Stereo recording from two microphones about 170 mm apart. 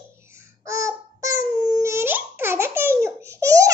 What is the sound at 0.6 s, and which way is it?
Babbling, 20° right (ahead or behind).